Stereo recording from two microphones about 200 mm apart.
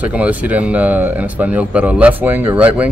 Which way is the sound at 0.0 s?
5° right (ahead or behind).